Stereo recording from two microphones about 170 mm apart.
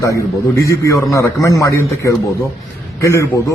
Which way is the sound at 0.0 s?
20° left (ahead or behind).